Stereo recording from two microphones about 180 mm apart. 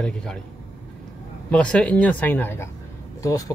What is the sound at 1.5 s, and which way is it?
Speech, 5° left (ahead or behind).